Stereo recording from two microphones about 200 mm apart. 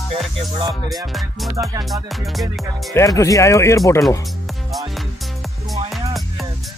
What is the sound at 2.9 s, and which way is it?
Speech, 15° left (ahead or behind).